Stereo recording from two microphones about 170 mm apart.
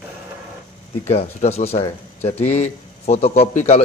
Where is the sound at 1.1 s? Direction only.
40° left (ahead or behind).